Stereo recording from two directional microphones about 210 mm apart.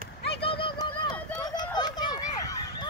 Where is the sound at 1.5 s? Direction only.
20° left (ahead or behind).